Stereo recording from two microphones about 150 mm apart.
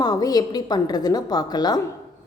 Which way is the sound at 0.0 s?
25° left (ahead or behind).